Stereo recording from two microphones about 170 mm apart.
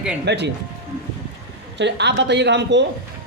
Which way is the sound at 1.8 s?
90° right.